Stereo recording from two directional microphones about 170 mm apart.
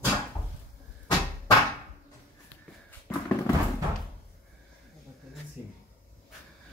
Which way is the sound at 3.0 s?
15° left (ahead or behind).